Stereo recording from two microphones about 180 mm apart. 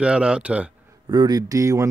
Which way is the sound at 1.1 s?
20° right (ahead or behind).